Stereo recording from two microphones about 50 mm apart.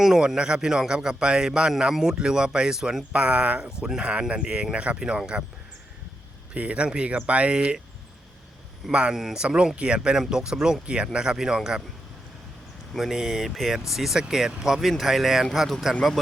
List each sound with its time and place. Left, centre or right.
0.0 s a man's voice: centre
3.1 s a man's voice: right
6.5 s speech: right
8.9 s speech: right
9.1 s a man's voice: centre
13.0 s a man's voice: centre